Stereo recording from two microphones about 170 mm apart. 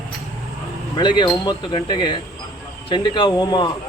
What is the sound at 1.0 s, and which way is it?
Speech, 25° left (ahead or behind).